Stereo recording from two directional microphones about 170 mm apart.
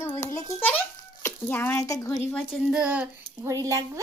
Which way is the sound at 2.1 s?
Centre (ahead or behind).